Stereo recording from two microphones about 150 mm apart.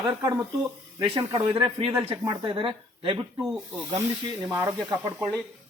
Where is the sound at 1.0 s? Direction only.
40° right (ahead or behind).